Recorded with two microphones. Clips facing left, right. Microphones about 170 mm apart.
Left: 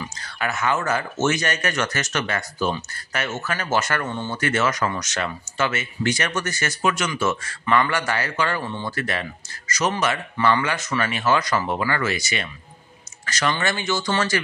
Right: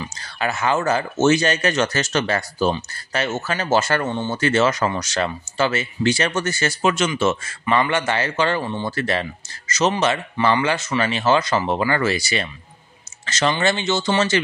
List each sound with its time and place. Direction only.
0.0 s speech: 30° right (ahead or behind)